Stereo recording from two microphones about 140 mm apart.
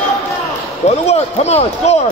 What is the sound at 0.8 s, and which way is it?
Speech, 50° left (ahead or behind).